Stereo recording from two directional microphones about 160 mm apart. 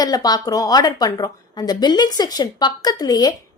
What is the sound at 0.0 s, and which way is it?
A woman's voice, 25° left (ahead or behind).